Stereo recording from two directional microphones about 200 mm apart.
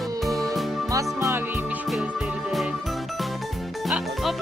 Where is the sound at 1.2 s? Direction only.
10° right (ahead or behind).